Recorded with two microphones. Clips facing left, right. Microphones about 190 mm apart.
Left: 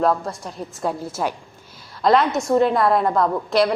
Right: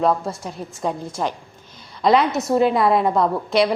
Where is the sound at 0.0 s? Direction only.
Centre (ahead or behind).